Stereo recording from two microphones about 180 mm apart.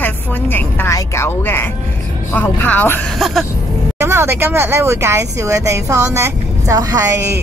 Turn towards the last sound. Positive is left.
turn(degrees=-15)  # may be behind; listen again after turning